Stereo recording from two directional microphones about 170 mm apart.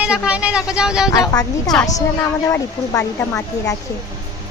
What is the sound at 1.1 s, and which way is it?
A woman's voice, 20° left (ahead or behind).